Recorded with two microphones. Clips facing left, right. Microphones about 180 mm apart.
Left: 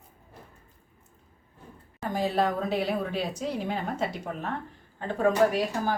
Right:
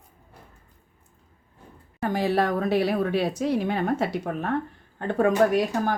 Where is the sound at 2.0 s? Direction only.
70° right (ahead or behind).